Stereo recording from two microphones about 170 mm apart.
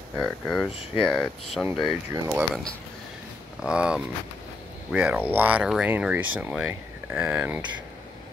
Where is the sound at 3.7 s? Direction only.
5° right (ahead or behind).